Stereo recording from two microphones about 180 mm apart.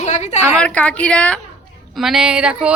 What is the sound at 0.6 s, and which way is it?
A child's voice, 5° left (ahead or behind).